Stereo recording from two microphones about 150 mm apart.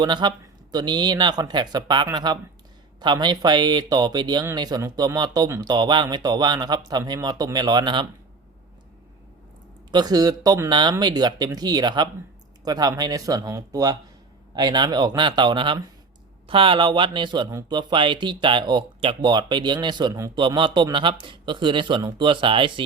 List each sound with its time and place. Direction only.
0.0 s speech: 30° right (ahead or behind)
9.9 s speech: 25° right (ahead or behind)